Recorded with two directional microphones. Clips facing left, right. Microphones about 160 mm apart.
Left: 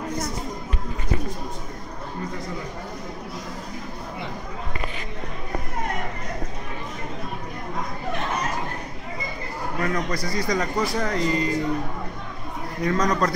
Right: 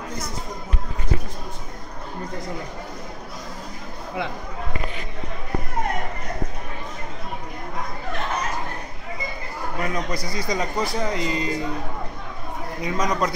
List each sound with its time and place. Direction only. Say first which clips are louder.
9.8 s speech: left 1 dB; 20° right (ahead or behind)
12.8 s speech: left 2 dB; 10° right (ahead or behind)